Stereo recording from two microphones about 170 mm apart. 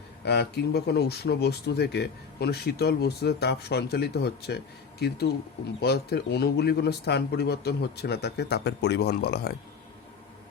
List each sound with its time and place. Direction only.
0.3 s speech: 75° left (ahead or behind)